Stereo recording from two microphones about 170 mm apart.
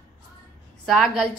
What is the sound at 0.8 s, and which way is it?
Speech, centre (ahead or behind).